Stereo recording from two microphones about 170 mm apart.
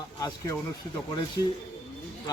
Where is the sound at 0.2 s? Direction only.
20° left (ahead or behind).